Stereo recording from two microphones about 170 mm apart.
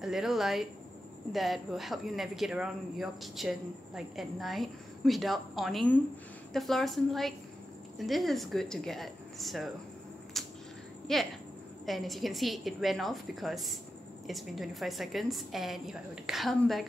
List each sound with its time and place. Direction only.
0.0 s speech: centre (ahead or behind)
10.3 s a sound: centre (ahead or behind)
11.1 s speech: centre (ahead or behind)